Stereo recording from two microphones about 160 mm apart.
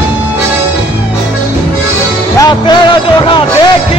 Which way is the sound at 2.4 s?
30° left (ahead or behind).